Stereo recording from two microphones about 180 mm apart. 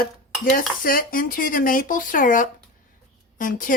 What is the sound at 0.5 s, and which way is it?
Speech, 50° left (ahead or behind).